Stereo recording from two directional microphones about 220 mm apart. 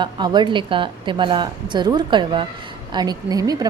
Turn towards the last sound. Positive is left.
turn(degrees=-15)  # may be behind; listen again after turning